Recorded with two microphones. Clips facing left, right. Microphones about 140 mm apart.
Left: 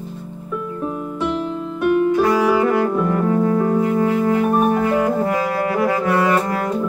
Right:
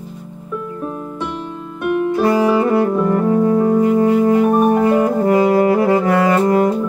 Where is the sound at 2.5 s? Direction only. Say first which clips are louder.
Right 2 dB; 30° right (ahead or behind).